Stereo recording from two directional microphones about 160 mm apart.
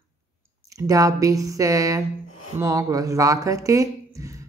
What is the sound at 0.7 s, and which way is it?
Speech, 20° right (ahead or behind).